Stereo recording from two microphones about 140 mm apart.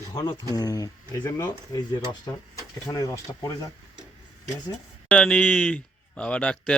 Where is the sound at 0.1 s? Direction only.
30° left (ahead or behind).